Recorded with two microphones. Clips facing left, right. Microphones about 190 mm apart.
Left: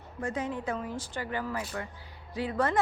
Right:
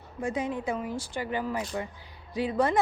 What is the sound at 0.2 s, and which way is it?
A woman's voice, 10° right (ahead or behind).